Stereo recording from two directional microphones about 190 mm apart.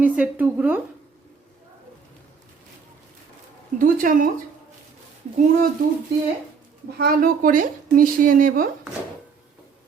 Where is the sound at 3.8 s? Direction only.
45° right (ahead or behind).